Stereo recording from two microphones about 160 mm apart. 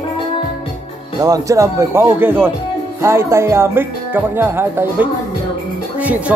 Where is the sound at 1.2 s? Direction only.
20° right (ahead or behind).